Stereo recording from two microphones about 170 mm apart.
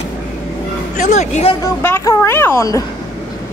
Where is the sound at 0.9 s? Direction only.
45° left (ahead or behind).